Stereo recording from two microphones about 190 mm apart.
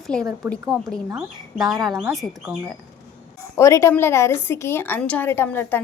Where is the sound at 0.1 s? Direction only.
5° left (ahead or behind).